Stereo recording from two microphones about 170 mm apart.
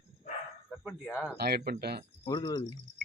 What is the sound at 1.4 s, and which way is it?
Speech, 70° right (ahead or behind).